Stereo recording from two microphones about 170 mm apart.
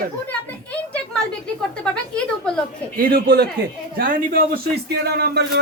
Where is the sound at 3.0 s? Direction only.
60° right (ahead or behind).